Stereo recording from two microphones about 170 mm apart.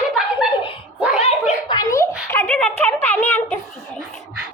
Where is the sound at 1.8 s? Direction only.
20° left (ahead or behind).